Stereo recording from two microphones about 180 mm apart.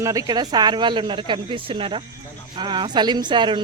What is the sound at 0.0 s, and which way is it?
Speech, 20° right (ahead or behind).